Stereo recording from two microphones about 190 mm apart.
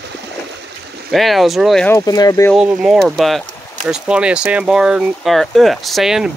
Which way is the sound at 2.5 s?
5° right (ahead or behind).